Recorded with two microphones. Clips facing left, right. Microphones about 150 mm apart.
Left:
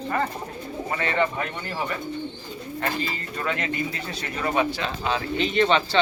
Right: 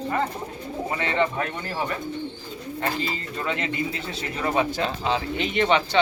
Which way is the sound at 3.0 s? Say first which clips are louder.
Even; 25° right (ahead or behind).